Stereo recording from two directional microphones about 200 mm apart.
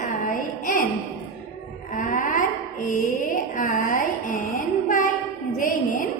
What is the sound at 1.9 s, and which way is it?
Mantra, 40° left (ahead or behind).